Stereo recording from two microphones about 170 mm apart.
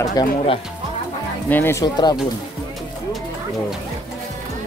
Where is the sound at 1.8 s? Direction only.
25° left (ahead or behind).